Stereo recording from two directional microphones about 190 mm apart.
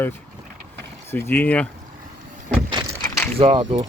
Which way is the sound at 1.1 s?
10° left (ahead or behind).